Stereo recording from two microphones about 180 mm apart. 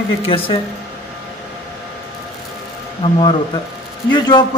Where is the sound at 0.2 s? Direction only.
30° left (ahead or behind).